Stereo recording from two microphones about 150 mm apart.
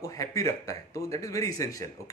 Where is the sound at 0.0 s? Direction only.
20° left (ahead or behind).